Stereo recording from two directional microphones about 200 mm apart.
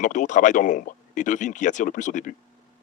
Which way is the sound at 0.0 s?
40° left (ahead or behind).